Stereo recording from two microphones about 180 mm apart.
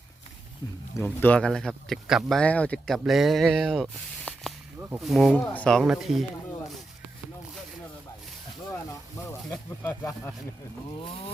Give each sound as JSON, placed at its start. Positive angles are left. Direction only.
{"t": 1.2, "sound": "speech", "side_deg": 5}
{"t": 4.3, "sound": "spray", "side_deg": 10}
{"t": 4.9, "sound": "speech", "side_deg": 0}
{"t": 9.5, "sound": "speech", "side_deg": 15}